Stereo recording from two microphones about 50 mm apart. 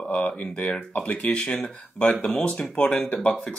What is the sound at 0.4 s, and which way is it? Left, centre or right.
Speech, left.